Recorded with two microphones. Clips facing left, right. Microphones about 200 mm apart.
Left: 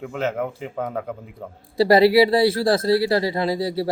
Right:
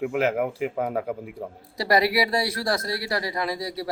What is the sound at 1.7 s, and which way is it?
Speech, 25° left (ahead or behind).